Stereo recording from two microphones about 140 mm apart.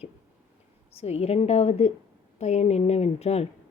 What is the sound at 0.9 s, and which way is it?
Speech, 50° left (ahead or behind).